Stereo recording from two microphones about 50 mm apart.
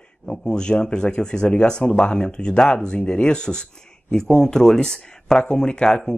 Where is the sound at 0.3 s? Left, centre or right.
Centre.